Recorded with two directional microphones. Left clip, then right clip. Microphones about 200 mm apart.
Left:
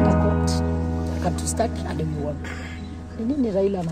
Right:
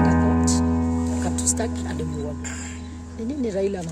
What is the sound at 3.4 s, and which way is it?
Speech, 15° right (ahead or behind).